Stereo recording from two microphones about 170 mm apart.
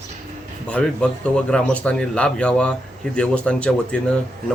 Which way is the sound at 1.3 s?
5° left (ahead or behind).